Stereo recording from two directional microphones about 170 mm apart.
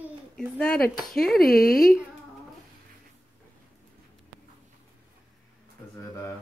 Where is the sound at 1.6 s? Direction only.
60° left (ahead or behind).